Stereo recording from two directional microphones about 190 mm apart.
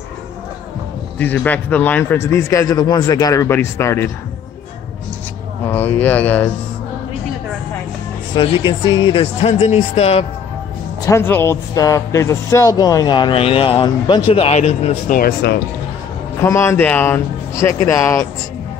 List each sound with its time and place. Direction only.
1.1 s a man's voice: 10° left (ahead or behind)
5.7 s a man's voice: 10° left (ahead or behind)
8.4 s speech: 25° left (ahead or behind)
11.1 s speech: 10° left (ahead or behind); by 15.1 s 35° left (ahead or behind)
15.1 s speech: 50° left (ahead or behind)
16.3 s a man's voice: 15° left (ahead or behind)